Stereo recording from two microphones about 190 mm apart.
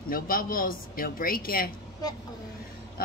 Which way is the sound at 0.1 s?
50° left (ahead or behind).